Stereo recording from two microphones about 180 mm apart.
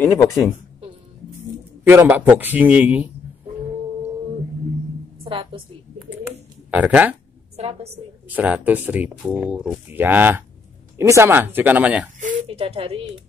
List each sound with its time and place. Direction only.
0.0 s a woman's voice: 15° left (ahead or behind)
1.9 s speech: 10° right (ahead or behind)
5.2 s a sound: 30° right (ahead or behind)
5.9 s a sound: 5° right (ahead or behind)
6.7 s speech: 10° right (ahead or behind)
7.5 s a woman's voice: 35° right (ahead or behind)
8.3 s speech: 10° right (ahead or behind)
12.2 s speech: 40° right (ahead or behind)